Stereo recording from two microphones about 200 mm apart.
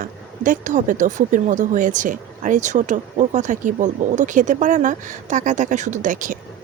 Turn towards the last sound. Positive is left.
turn(degrees=-40)  # may be behind; listen again after turning